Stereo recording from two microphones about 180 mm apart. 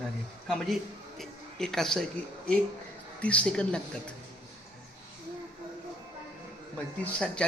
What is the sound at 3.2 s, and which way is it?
Speech, 5° left (ahead or behind).